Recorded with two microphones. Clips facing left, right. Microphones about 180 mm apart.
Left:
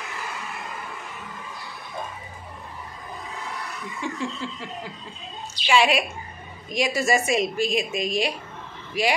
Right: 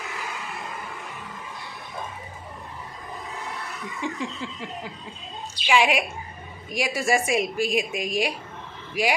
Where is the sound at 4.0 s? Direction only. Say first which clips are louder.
Left 1 dB; 15° right (ahead or behind).